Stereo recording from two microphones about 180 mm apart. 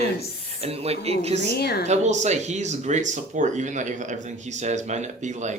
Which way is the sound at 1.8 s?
40° right (ahead or behind).